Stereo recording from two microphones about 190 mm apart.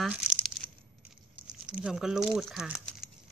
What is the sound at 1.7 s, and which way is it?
Speech, 5° right (ahead or behind).